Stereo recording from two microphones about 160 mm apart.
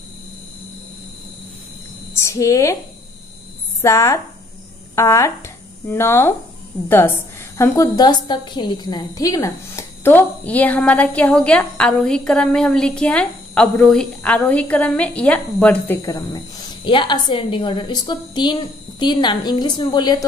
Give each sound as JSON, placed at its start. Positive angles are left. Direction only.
{"t": 2.1, "sound": "a woman's voice", "side_deg": 20}
{"t": 3.8, "sound": "a woman's voice", "side_deg": 20}
{"t": 7.5, "sound": "a woman's voice", "side_deg": 20}
{"t": 16.0, "sound": "a woman's voice", "side_deg": 20}